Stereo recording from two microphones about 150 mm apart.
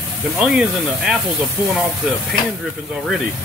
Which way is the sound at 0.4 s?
5° right (ahead or behind).